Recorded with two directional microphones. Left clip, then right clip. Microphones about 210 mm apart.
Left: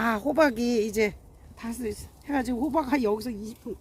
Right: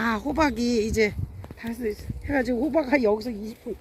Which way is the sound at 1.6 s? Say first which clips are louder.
Right 4 dB; 65° left (ahead or behind).